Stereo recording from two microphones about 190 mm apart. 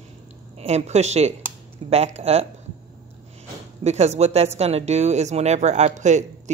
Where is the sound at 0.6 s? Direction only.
35° right (ahead or behind).